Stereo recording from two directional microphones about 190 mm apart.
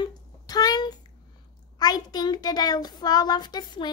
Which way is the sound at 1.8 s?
20° left (ahead or behind).